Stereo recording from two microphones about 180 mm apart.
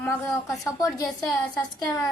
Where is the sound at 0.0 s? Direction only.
15° left (ahead or behind).